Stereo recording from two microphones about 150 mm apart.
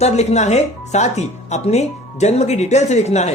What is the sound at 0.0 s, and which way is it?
Speech, 45° left (ahead or behind).